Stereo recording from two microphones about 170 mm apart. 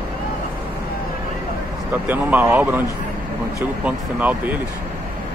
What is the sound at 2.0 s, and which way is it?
Speech, 10° right (ahead or behind).